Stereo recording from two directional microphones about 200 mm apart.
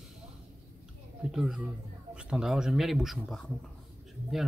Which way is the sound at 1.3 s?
Centre (ahead or behind).